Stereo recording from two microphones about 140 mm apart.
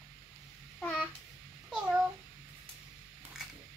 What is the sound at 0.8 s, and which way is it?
Babbling, 10° left (ahead or behind).